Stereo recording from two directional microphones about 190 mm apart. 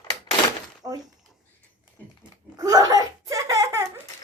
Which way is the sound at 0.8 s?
20° right (ahead or behind).